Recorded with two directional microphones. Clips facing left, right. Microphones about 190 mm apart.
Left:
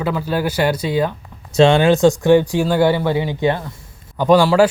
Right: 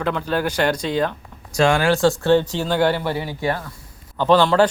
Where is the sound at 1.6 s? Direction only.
25° left (ahead or behind).